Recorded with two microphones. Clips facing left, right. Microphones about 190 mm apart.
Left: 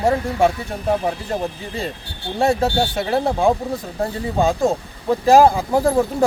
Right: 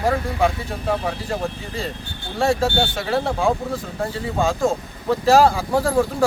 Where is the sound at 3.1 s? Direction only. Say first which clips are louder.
Left 3 dB; 20° left (ahead or behind).